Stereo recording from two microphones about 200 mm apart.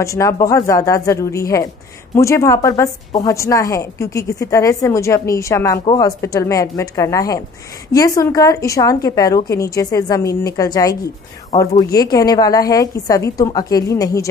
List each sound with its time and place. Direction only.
0.0 s a woman's voice: 15° left (ahead or behind)